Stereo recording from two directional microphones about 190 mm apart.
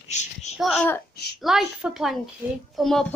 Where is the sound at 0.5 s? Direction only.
Centre (ahead or behind).